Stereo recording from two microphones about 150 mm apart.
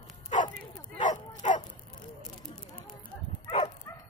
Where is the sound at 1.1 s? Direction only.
55° left (ahead or behind).